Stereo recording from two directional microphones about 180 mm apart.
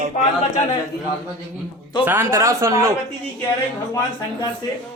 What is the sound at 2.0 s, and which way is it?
Speech, 15° right (ahead or behind).